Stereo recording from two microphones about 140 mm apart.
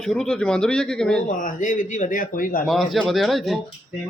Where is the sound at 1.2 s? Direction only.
70° left (ahead or behind).